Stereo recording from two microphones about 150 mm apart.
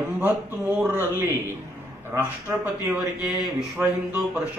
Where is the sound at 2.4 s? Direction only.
10° right (ahead or behind).